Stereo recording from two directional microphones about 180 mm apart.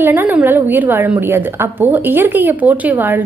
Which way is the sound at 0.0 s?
10° right (ahead or behind).